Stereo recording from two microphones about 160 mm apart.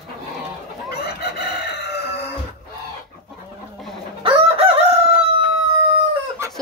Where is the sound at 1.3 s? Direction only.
90° left.